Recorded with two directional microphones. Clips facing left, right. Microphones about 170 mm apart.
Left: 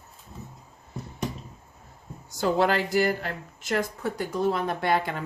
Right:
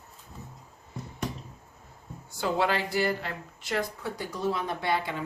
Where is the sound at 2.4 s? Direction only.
45° left (ahead or behind).